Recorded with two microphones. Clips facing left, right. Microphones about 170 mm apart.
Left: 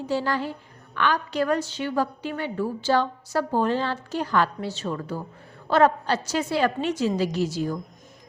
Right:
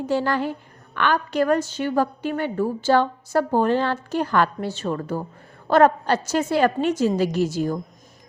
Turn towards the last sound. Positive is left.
turn(degrees=-50)  # may be behind; listen again after turning